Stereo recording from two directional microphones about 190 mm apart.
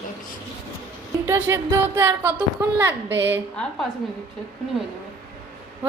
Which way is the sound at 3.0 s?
70° right (ahead or behind).